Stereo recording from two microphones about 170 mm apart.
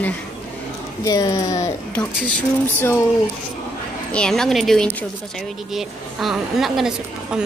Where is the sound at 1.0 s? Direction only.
20° left (ahead or behind).